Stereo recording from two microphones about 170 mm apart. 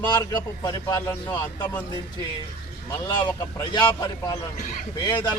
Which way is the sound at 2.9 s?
25° left (ahead or behind).